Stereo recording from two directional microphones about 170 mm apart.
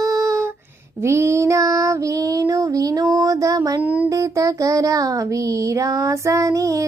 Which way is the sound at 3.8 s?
10° right (ahead or behind).